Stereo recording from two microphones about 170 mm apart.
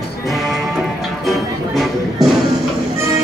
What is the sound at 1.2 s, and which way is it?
Music, centre (ahead or behind).